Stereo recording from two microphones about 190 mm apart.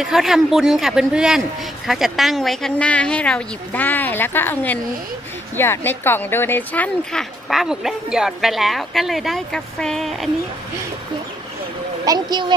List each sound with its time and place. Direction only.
0.0 s speech: centre (ahead or behind)
12.0 s speech: 20° right (ahead or behind)